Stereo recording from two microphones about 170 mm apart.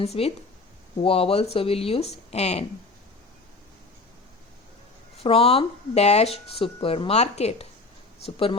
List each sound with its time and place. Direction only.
0.0 s speech: 35° left (ahead or behind)
5.1 s speech: 35° left (ahead or behind)